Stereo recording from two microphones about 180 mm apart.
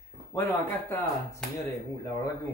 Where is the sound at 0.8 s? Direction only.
10° left (ahead or behind).